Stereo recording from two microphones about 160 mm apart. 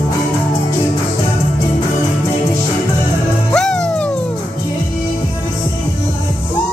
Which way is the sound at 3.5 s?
5° left (ahead or behind).